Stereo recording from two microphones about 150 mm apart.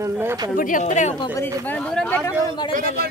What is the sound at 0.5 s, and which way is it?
Speech, 60° left (ahead or behind).